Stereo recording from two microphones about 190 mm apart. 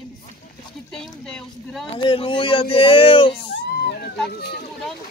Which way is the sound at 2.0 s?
25° left (ahead or behind).